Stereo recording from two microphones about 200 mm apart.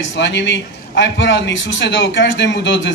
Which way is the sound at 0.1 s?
60° left (ahead or behind).